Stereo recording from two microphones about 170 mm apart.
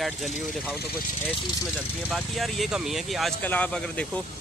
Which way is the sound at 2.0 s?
Centre (ahead or behind).